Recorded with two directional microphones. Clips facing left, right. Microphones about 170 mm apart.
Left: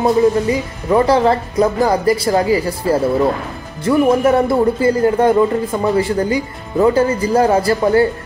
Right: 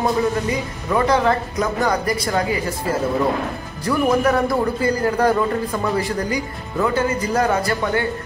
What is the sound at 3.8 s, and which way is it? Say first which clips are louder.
Speech: left 5 dB; 25° left (ahead or behind).